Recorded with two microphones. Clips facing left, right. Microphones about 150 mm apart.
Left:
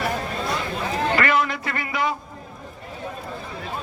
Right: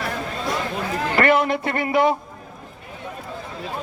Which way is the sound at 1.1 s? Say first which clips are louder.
Right 6 dB; 55° right (ahead or behind).